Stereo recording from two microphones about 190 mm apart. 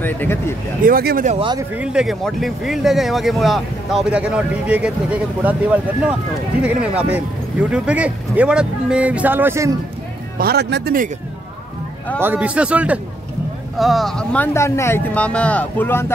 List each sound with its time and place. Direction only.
0.0 s speech: 10° left (ahead or behind)
0.8 s speech: 50° right (ahead or behind)
1.4 s speech: 20° right (ahead or behind)
1.8 s speech: 5° right (ahead or behind)
10.4 s speech: 60° right (ahead or behind)
12.2 s speech: 10° right (ahead or behind); by 16.1 s 10° left (ahead or behind)